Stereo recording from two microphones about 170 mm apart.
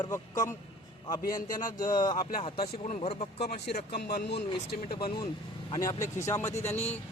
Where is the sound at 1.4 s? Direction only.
50° left (ahead or behind).